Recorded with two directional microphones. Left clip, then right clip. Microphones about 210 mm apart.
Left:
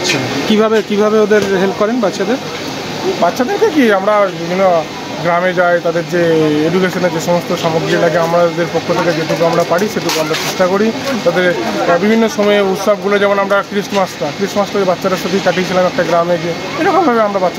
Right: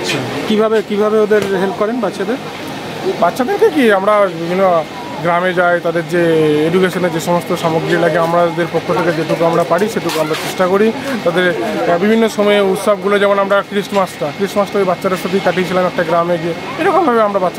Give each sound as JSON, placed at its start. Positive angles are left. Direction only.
{"t": 0.0, "sound": "speech", "side_deg": 5}
{"t": 3.3, "sound": "speech", "side_deg": -30}
{"t": 8.0, "sound": "speech", "side_deg": -25}
{"t": 10.6, "sound": "speech", "side_deg": -25}
{"t": 15.4, "sound": "speech", "side_deg": -20}